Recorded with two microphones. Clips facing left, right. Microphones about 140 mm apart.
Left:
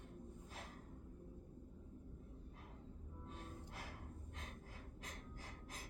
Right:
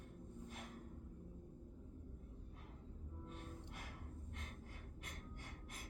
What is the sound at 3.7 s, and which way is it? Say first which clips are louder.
Music: left 1 dB; 30° left (ahead or behind).